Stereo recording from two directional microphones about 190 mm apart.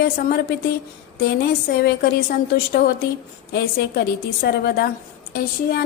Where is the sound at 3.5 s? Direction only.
55° left (ahead or behind).